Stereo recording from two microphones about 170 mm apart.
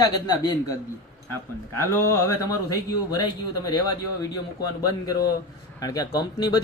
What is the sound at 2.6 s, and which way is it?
Speech, 20° left (ahead or behind).